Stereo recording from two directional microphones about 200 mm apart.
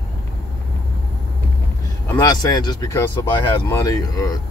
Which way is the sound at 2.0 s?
15° left (ahead or behind).